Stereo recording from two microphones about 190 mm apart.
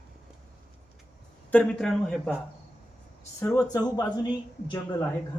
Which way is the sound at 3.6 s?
20° left (ahead or behind).